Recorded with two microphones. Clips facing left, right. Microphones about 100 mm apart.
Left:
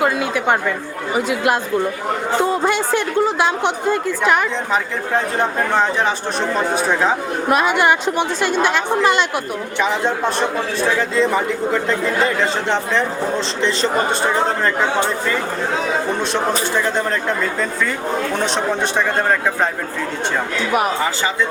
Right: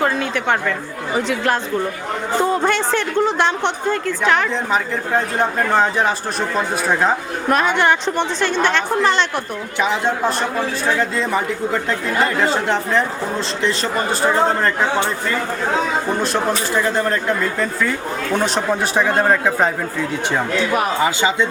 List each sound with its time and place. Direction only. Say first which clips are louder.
0.0 s a woman's voice: left 1 dB; 10° left (ahead or behind)
16.2 s a woman's voice: even; centre (ahead or behind)
21.0 s speech: right 3 dB; 20° right (ahead or behind)